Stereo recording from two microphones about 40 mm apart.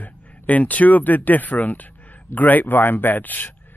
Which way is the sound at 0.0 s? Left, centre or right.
Left.